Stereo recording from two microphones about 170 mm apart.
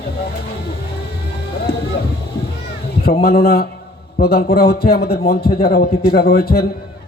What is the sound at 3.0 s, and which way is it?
A man's voice, 65° left (ahead or behind).